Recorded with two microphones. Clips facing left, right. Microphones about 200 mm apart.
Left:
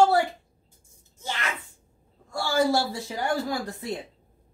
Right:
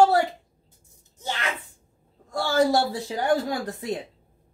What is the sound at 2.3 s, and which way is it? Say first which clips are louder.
Speech: right 2 dB; 20° right (ahead or behind).